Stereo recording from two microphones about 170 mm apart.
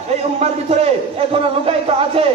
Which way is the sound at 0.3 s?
40° right (ahead or behind).